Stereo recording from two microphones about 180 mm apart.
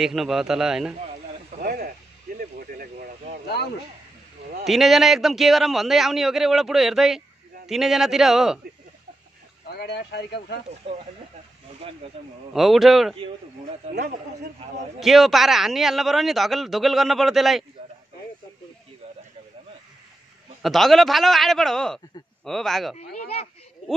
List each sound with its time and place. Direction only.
0.0 s a man's voice: centre (ahead or behind)
1.6 s a sound: 55° right (ahead or behind)
4.6 s a man's voice: centre (ahead or behind)
9.7 s speech: 65° left (ahead or behind)
12.0 s speech: 30° right (ahead or behind)
12.5 s a man's voice: centre (ahead or behind)
14.6 s a man's voice: 30° right (ahead or behind)
15.0 s a man's voice: centre (ahead or behind)
20.6 s a man's voice: centre (ahead or behind)